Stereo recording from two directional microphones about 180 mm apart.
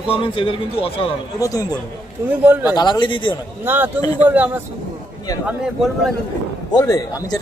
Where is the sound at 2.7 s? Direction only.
25° left (ahead or behind).